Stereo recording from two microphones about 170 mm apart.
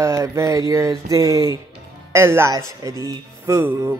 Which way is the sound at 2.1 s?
15° right (ahead or behind).